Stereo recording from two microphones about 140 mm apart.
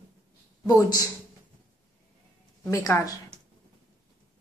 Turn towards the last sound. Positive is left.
turn(degrees=20)  # may be behind; listen again after turning